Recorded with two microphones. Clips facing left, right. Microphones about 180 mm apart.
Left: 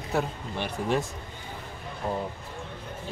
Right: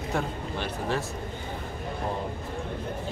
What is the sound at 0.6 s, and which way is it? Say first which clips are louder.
Speech: left 3 dB; 15° left (ahead or behind).